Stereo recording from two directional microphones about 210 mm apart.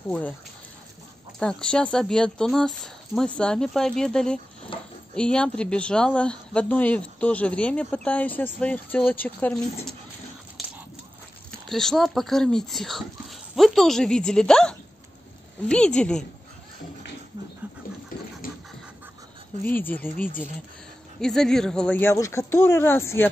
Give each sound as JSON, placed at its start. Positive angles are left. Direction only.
{"t": 1.4, "sound": "speech", "side_deg": 5}
{"t": 4.7, "sound": "a sound", "side_deg": 25}
{"t": 5.1, "sound": "speech", "side_deg": 5}
{"t": 11.7, "sound": "speech", "side_deg": 0}
{"t": 19.6, "sound": "speech", "side_deg": 10}